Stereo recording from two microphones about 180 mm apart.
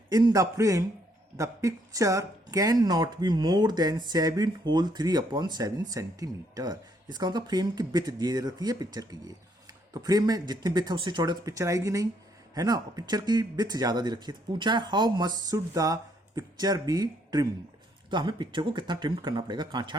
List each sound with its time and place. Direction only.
0.1 s speech: 20° right (ahead or behind)